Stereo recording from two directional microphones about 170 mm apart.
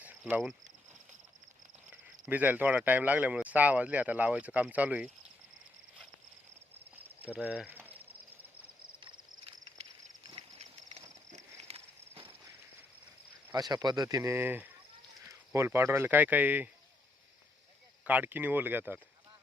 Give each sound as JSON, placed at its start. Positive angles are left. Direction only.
{"t": 0.0, "sound": "cricket", "side_deg": -10}
{"t": 2.2, "sound": "speech", "side_deg": -10}
{"t": 6.9, "sound": "cricket", "side_deg": -10}
{"t": 9.0, "sound": "a sound", "side_deg": -30}
{"t": 11.5, "sound": "a sound", "side_deg": -35}
{"t": 13.5, "sound": "speech", "side_deg": -25}
{"t": 18.0, "sound": "speech", "side_deg": -10}